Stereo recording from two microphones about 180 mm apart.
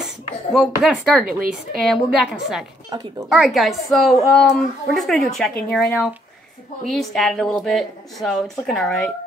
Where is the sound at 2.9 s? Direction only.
20° right (ahead or behind).